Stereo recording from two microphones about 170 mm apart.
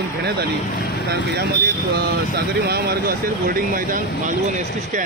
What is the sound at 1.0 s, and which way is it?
Speech, 70° right (ahead or behind).